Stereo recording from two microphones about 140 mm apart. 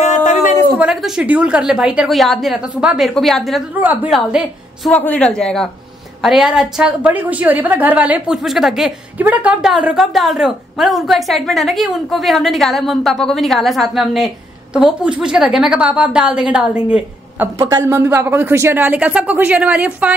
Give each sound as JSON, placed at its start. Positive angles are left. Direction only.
{"t": 0.0, "sound": "a sound", "side_deg": 60}
{"t": 0.7, "sound": "a woman's voice", "side_deg": -5}
{"t": 3.8, "sound": "a woman's voice", "side_deg": -10}
{"t": 4.9, "sound": "a man's voice", "side_deg": 10}
{"t": 17.6, "sound": "a woman's voice", "side_deg": -25}